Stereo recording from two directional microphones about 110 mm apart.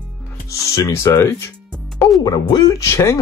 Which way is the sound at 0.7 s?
25° left (ahead or behind).